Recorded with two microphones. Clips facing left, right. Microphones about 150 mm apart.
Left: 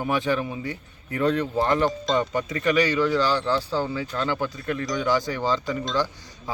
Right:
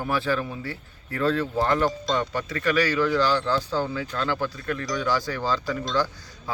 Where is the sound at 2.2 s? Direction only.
20° left (ahead or behind).